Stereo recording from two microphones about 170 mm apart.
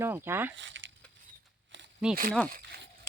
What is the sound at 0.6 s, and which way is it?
Speech, 90° right.